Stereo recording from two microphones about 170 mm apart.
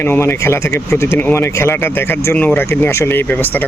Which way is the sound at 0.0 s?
15° left (ahead or behind).